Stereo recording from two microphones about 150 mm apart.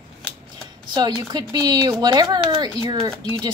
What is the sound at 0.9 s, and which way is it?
A woman's voice, 30° right (ahead or behind).